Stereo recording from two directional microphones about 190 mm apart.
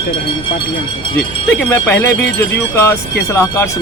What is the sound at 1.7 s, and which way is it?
Speech, 10° left (ahead or behind).